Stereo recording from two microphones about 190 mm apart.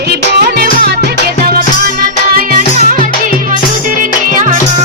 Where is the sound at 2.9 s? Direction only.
45° right (ahead or behind).